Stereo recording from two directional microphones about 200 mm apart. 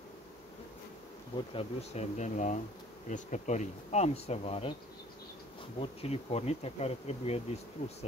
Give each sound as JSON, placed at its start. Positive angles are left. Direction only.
{"t": 1.5, "sound": "bee", "side_deg": 30}
{"t": 5.8, "sound": "bee", "side_deg": 30}